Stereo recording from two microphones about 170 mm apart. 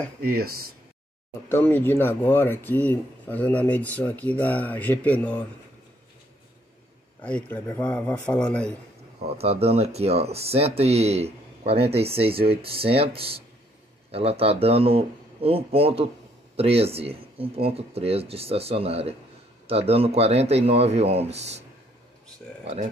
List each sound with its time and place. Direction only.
0.2 s speech: 60° right (ahead or behind)
1.5 s speech: 10° left (ahead or behind)
7.2 s speech: 5° left (ahead or behind)
9.4 s speech: 35° right (ahead or behind)